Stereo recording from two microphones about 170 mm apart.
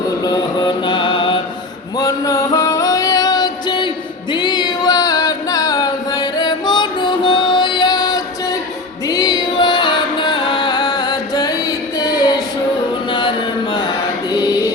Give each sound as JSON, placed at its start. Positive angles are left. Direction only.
{"t": 0.3, "sound": "mantra", "side_deg": 25}
{"t": 2.0, "sound": "music", "side_deg": 20}
{"t": 4.3, "sound": "a sound", "side_deg": 25}
{"t": 9.0, "sound": "music", "side_deg": 20}
{"t": 14.3, "sound": "music", "side_deg": 25}